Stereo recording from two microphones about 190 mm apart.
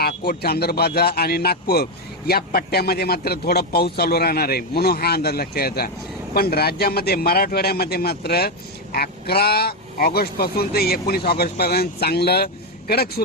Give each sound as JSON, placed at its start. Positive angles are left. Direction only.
{"t": 0.3, "sound": "a man's voice", "side_deg": 55}